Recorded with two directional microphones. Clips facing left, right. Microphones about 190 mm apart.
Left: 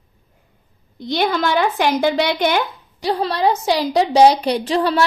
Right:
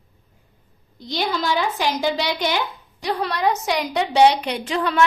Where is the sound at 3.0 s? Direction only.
30° left (ahead or behind).